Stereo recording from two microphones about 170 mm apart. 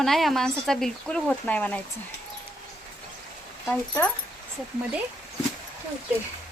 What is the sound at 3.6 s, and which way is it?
Speech, 5° left (ahead or behind).